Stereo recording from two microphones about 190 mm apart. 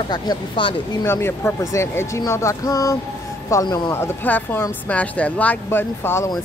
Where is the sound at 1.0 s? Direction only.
10° left (ahead or behind).